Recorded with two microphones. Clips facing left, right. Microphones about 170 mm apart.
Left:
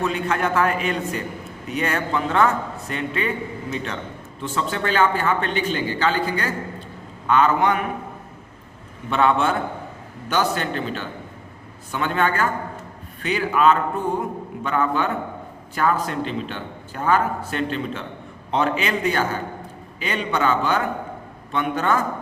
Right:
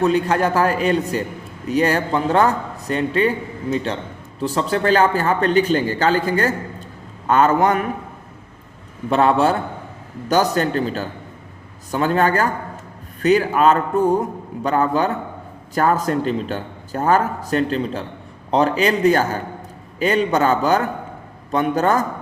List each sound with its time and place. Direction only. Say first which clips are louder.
0.0 s a man's voice: right 6 dB; 35° right (ahead or behind)
9.0 s a man's voice: right 4 dB; 40° right (ahead or behind)